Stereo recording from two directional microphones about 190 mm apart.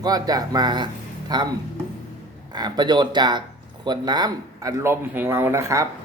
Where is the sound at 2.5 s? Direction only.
20° right (ahead or behind).